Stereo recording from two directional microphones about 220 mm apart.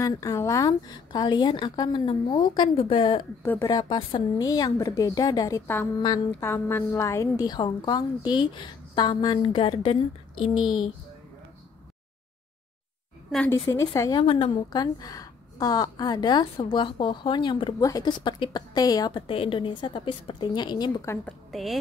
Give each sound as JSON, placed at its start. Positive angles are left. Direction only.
{"t": 0.0, "sound": "a woman's voice", "side_deg": 15}
{"t": 13.3, "sound": "a woman's voice", "side_deg": 10}
{"t": 21.5, "sound": "speech", "side_deg": 0}